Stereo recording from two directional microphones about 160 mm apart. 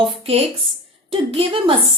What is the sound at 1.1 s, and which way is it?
Speech, 35° right (ahead or behind).